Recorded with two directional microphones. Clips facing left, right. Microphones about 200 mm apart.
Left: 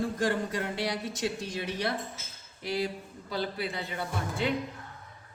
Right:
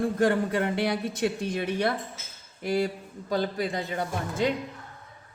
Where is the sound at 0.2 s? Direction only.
60° right (ahead or behind).